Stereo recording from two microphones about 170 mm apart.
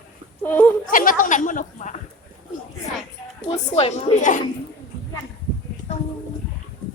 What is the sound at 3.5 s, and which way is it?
Speech, 35° left (ahead or behind).